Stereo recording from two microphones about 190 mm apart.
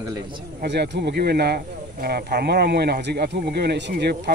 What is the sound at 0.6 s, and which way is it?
Speech, 60° right (ahead or behind).